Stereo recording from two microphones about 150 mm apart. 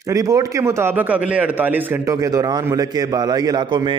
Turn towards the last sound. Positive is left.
turn(degrees=-30)  # may be behind; listen again after turning